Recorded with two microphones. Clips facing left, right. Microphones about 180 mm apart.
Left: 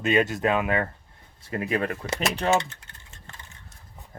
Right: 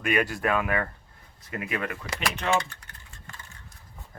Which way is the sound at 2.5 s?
25° left (ahead or behind).